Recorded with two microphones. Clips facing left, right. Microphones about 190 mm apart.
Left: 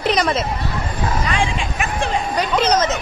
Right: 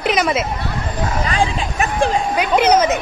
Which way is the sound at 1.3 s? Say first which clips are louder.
Right 2 dB; 35° right (ahead or behind).